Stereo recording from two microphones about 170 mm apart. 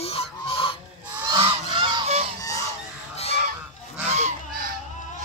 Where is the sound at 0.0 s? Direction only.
35° left (ahead or behind).